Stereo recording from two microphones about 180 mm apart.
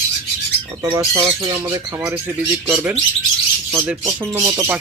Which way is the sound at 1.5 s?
15° right (ahead or behind).